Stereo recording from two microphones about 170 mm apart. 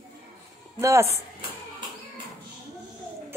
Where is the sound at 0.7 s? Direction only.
15° right (ahead or behind).